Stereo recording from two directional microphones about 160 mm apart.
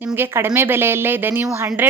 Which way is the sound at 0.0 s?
15° right (ahead or behind).